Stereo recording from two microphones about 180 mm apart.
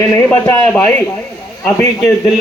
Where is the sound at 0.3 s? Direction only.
10° left (ahead or behind).